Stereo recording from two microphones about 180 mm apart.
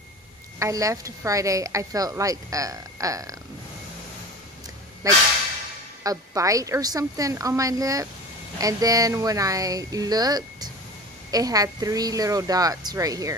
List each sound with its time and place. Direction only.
0.6 s a woman's voice: 15° right (ahead or behind)
5.0 s a woman's voice: 20° right (ahead or behind)